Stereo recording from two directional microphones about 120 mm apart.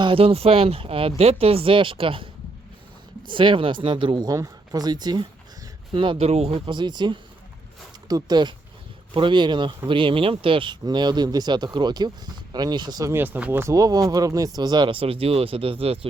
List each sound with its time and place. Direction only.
0.0 s speech: 50° right (ahead or behind)
6.7 s speech: 40° right (ahead or behind)
13.1 s speech: 15° right (ahead or behind); by 16.0 s 50° right (ahead or behind)